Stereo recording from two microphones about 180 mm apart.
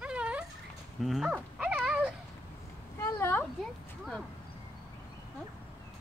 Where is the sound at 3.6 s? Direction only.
5° left (ahead or behind).